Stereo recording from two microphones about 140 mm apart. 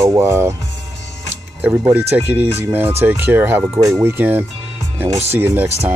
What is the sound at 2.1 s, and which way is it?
Speech, 15° right (ahead or behind).